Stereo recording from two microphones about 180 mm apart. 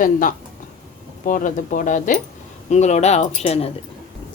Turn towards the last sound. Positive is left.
turn(degrees=35)  # may be behind; listen again after turning